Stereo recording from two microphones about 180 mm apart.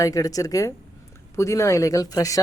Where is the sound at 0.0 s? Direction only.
20° left (ahead or behind).